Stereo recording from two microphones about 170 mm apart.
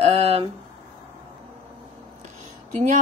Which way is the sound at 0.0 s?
35° right (ahead or behind).